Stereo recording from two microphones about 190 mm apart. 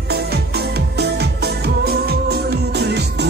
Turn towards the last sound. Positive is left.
turn(degrees=-60)  # may be behind; listen again after turning